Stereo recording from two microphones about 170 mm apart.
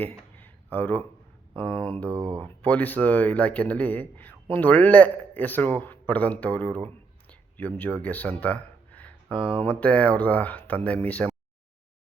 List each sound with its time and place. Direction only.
0.0 s a sound: 10° left (ahead or behind)
1.5 s a man's voice: 10° left (ahead or behind)
2.0 s speech: 15° right (ahead or behind)
2.4 s a man's voice: 10° left (ahead or behind)
7.3 s a sound: 10° left (ahead or behind)
9.4 s speech: 35° right (ahead or behind)
9.6 s a man's voice: 10° left (ahead or behind)